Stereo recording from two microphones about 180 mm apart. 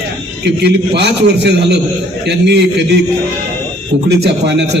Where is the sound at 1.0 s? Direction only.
70° right (ahead or behind).